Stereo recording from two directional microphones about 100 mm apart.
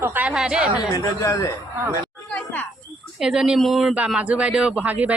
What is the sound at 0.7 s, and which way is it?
Speech, 40° left (ahead or behind).